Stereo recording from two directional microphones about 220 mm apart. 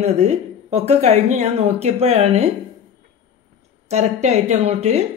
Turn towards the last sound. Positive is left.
turn(degrees=-30)  # may be behind; listen again after turning